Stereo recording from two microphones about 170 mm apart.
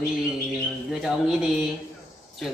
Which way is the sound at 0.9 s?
Centre (ahead or behind).